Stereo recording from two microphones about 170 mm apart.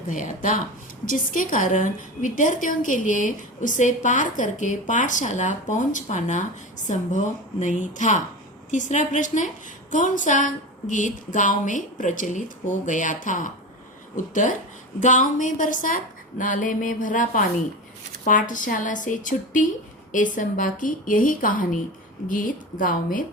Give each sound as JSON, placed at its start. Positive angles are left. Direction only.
{"t": 0.1, "sound": "a woman's voice", "side_deg": 50}
{"t": 15.0, "sound": "a woman's voice", "side_deg": 50}